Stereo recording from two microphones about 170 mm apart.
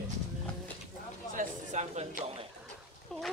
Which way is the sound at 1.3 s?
45° right (ahead or behind).